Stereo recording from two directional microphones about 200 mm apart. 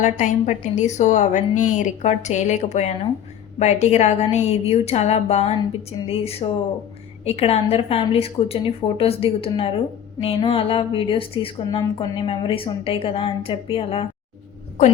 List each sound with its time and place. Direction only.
0.0 s a woman's voice: 35° left (ahead or behind)